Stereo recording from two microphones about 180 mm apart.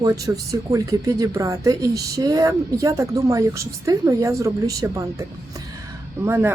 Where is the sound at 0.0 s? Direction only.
20° right (ahead or behind).